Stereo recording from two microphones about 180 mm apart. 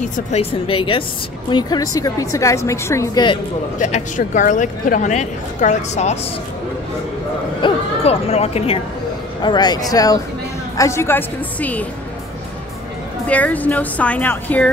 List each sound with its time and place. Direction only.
0.0 s a woman's voice: 35° left (ahead or behind); by 3.3 s 20° left (ahead or behind)
3.8 s speech: 45° left (ahead or behind)
7.6 s a woman's voice: 35° left (ahead or behind); by 11.8 s 10° left (ahead or behind)
13.3 s speech: 10° left (ahead or behind)